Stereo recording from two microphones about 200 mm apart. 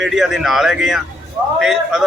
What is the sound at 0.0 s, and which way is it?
A man's voice, centre (ahead or behind).